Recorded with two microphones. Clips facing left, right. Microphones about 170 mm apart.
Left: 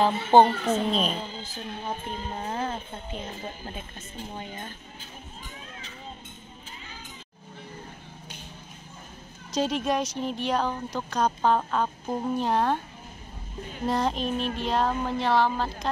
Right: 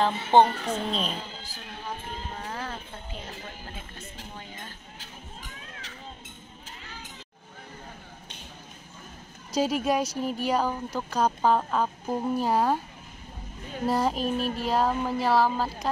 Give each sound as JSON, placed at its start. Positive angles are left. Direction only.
{"t": 0.0, "sound": "speech", "side_deg": 10}
{"t": 4.9, "sound": "a sound", "side_deg": -80}
{"t": 9.5, "sound": "speech", "side_deg": -5}
{"t": 13.8, "sound": "speech", "side_deg": -5}